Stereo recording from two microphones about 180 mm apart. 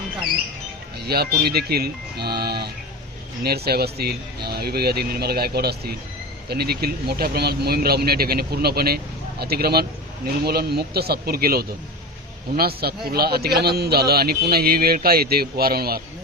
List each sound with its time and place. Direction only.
0.9 s speech: 60° right (ahead or behind)